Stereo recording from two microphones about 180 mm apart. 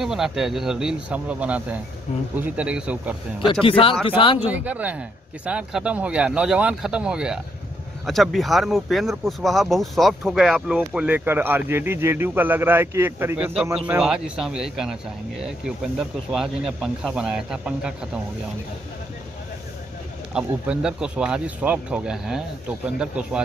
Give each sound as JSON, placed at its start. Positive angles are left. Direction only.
{"t": 0.0, "sound": "speech", "side_deg": 0}
{"t": 3.6, "sound": "speech", "side_deg": 30}
{"t": 4.5, "sound": "speech", "side_deg": -10}
{"t": 20.3, "sound": "speech", "side_deg": -5}